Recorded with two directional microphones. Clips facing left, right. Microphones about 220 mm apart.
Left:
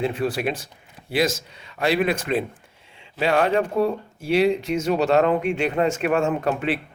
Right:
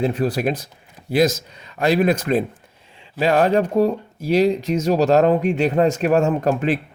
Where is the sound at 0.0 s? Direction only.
40° right (ahead or behind).